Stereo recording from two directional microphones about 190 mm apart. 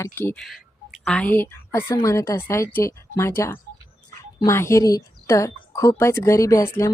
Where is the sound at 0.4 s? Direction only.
Centre (ahead or behind).